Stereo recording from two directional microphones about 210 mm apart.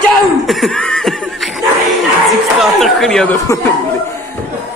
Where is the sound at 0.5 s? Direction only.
Centre (ahead or behind).